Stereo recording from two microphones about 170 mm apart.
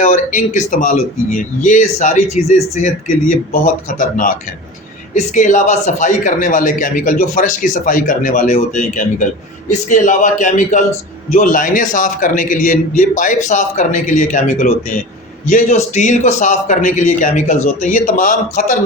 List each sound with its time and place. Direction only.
0.0 s speech: 45° left (ahead or behind)
5.1 s speech: 45° left (ahead or behind)